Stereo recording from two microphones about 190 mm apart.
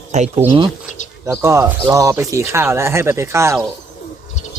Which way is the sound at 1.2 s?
15° right (ahead or behind).